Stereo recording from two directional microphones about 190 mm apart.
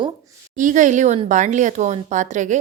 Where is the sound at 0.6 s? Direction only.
40° right (ahead or behind).